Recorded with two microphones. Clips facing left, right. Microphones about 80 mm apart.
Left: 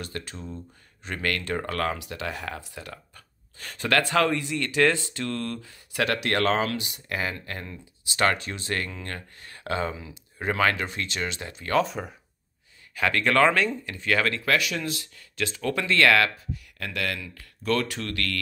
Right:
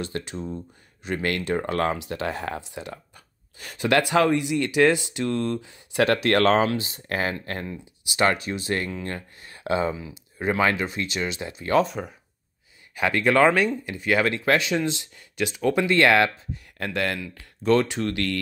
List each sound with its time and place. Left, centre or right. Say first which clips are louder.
0.0 s speech: right 6 dB; right
2.6 s speech: right 4 dB; right
3.5 s speech: right 3 dB; centre
6.0 s speech: right 5 dB; right
7.6 s speech: right 5 dB; centre
12.9 s speech: right 2 dB; centre
14.4 s speech: right 4 dB; right
16.7 s speech: right 5 dB; right